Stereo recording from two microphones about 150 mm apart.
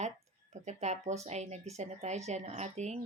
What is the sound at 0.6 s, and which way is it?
Speech, 50° right (ahead or behind).